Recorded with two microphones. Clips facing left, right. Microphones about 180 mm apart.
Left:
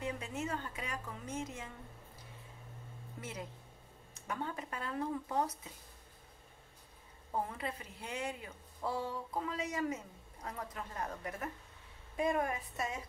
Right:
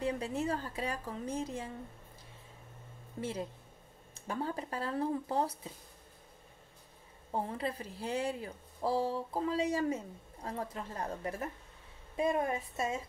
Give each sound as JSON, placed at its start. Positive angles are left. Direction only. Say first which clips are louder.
{"t": 0.0, "sound": "speech", "louder": "right 6 dB", "side_deg": -35}
{"t": 3.2, "sound": "speech", "louder": "right 8 dB", "side_deg": -30}
{"t": 7.3, "sound": "a woman's voice", "louder": "right 3 dB", "side_deg": -30}